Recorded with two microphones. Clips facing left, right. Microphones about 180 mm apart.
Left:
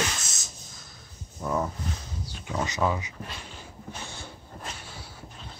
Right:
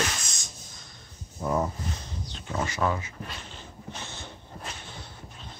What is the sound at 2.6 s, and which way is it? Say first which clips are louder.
Speech: left 1 dB; 15° left (ahead or behind).